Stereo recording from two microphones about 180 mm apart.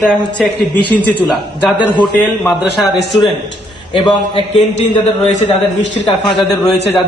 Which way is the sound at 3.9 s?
30° left (ahead or behind).